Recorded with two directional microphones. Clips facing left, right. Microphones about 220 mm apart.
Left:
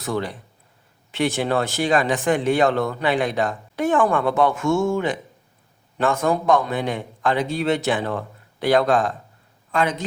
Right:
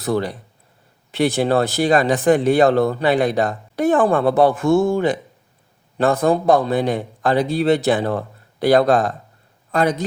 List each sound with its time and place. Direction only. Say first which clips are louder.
0.0 s speech: right 5 dB; 35° right (ahead or behind)